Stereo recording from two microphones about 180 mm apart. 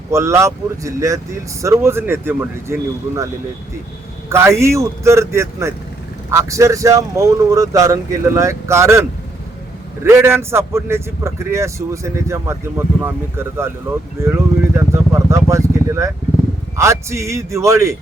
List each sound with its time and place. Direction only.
0.1 s speech: 15° right (ahead or behind)
4.3 s speech: 15° right (ahead or behind)